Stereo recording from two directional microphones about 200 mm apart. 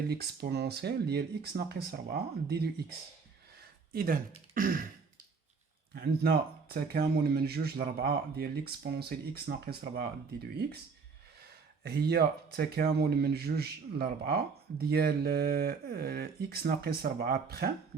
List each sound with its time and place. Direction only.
0.1 s speech: 55° right (ahead or behind)
3.9 s speech: 45° right (ahead or behind)
5.9 s speech: 50° right (ahead or behind)
11.8 s speech: 55° right (ahead or behind)